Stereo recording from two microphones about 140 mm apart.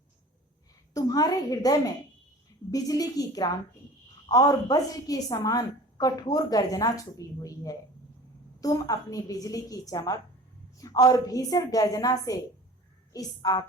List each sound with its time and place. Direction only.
0.9 s a woman's voice: 25° left (ahead or behind)